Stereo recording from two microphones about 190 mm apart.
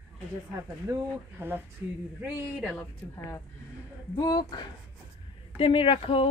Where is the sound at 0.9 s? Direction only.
10° right (ahead or behind).